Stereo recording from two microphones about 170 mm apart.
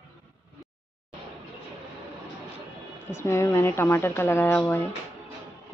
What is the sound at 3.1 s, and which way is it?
A woman's voice, 15° left (ahead or behind).